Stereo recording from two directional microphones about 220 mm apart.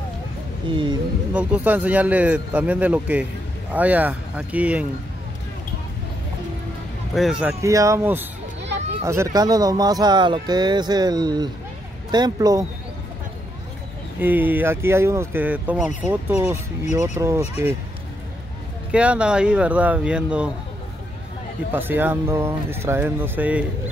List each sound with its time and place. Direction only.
0.7 s speech: 20° right (ahead or behind)
1.3 s speech: 5° right (ahead or behind)
7.2 s speech: 5° right (ahead or behind)
7.6 s speech: 15° right (ahead or behind)
14.2 s speech: 10° right (ahead or behind)
18.9 s speech: 5° right (ahead or behind)
21.7 s speech: 10° right (ahead or behind)